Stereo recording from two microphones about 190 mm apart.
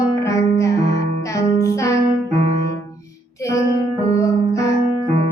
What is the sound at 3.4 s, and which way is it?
Music, 15° left (ahead or behind).